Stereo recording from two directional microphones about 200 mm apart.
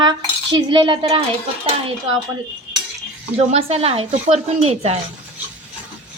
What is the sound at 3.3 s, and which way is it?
Speech, 30° right (ahead or behind).